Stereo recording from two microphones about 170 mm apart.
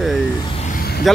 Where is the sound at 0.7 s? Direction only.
60° left (ahead or behind).